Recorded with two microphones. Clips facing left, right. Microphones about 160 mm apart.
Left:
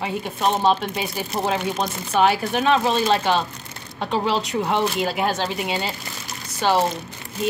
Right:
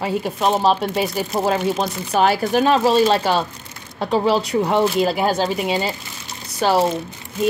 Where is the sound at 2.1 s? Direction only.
40° right (ahead or behind).